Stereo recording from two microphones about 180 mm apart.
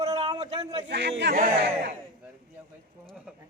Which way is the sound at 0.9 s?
70° right (ahead or behind).